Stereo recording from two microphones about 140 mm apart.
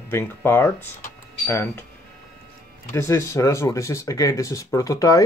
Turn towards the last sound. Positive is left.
turn(degrees=25)  # may be behind; listen again after turning